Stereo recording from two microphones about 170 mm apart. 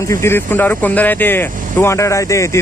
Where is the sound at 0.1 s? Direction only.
15° left (ahead or behind).